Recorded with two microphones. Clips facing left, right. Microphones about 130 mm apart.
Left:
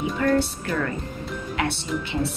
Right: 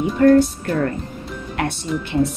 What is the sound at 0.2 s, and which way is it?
Speech, 35° right (ahead or behind).